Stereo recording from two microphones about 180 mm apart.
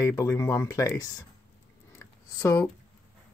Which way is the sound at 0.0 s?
15° left (ahead or behind).